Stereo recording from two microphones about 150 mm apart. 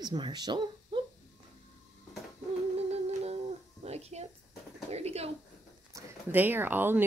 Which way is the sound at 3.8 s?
45° right (ahead or behind).